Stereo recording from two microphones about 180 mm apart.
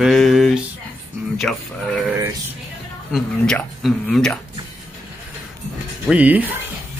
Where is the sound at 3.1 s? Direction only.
Centre (ahead or behind).